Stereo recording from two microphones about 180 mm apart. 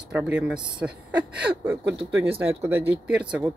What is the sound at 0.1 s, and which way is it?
Speech, 5° right (ahead or behind).